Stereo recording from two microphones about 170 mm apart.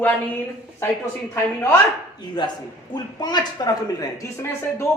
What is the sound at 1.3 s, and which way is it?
Speech, 15° left (ahead or behind).